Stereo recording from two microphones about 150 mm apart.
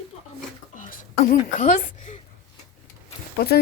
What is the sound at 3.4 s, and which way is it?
Speech, 90° left.